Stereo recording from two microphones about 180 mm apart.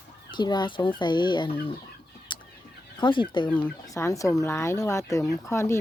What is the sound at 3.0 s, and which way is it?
Speech, 25° left (ahead or behind).